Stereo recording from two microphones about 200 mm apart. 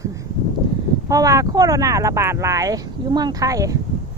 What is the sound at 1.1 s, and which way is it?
Speech, 15° right (ahead or behind).